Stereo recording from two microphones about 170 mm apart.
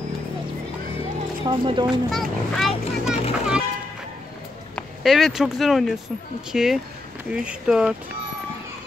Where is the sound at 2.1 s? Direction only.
Centre (ahead or behind).